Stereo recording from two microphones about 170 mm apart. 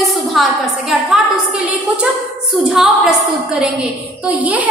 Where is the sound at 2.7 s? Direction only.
5° right (ahead or behind).